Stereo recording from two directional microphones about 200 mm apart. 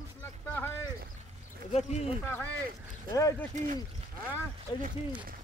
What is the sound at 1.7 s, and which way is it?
Speech, 30° left (ahead or behind).